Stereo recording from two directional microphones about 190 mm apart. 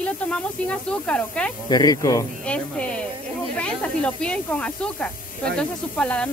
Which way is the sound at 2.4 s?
5° left (ahead or behind).